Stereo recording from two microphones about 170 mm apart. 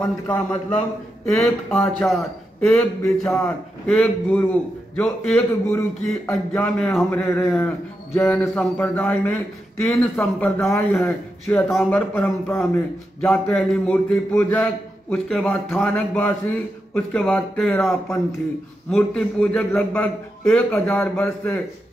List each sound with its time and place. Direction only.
0.0 s a man's voice: 10° left (ahead or behind)